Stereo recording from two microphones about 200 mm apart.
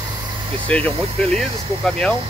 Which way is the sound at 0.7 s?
5° left (ahead or behind).